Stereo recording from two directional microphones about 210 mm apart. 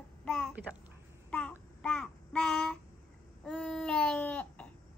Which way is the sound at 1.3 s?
5° left (ahead or behind).